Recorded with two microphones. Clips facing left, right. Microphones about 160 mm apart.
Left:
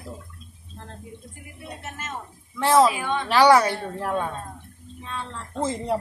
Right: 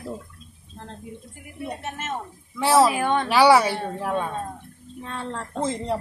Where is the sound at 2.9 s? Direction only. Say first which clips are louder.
Right 5 dB; 55° right (ahead or behind).